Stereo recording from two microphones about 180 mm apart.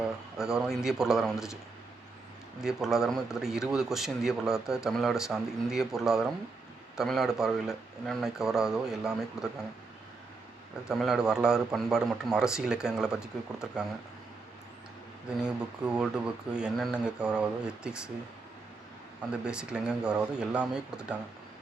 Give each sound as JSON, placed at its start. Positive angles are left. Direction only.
{"t": 0.3, "sound": "speech", "side_deg": -5}
{"t": 2.6, "sound": "speech", "side_deg": 0}
{"t": 10.8, "sound": "speech", "side_deg": -5}
{"t": 15.4, "sound": "speech", "side_deg": -5}
{"t": 19.3, "sound": "speech", "side_deg": -5}